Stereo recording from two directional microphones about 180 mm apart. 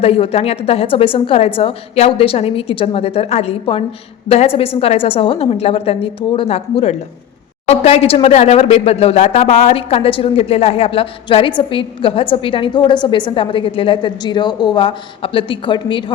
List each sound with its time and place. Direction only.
0.0 s a woman's voice: 35° left (ahead or behind)